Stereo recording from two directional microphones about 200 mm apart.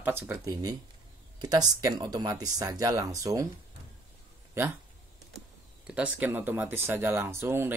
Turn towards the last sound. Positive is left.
turn(degrees=-10)  # may be behind; listen again after turning